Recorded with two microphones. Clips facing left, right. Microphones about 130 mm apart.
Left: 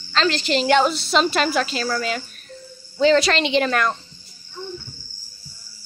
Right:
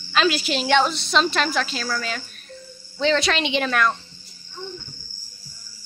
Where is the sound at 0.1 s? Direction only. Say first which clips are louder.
Left 1 dB; 10° right (ahead or behind).